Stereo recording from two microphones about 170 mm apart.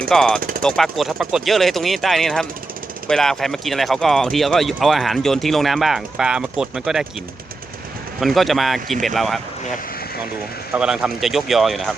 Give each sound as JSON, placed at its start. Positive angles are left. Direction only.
{"t": 0.1, "sound": "speech", "side_deg": 5}
{"t": 0.3, "sound": "speech", "side_deg": -55}
{"t": 0.6, "sound": "speech", "side_deg": 5}
{"t": 8.2, "sound": "speech", "side_deg": 0}
{"t": 10.8, "sound": "speech", "side_deg": -5}